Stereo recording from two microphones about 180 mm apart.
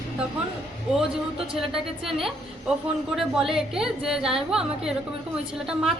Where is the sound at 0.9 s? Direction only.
Centre (ahead or behind).